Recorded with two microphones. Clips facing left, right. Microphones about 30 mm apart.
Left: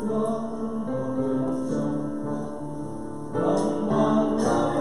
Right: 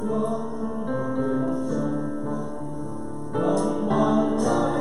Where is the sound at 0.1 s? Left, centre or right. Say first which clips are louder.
Even; centre.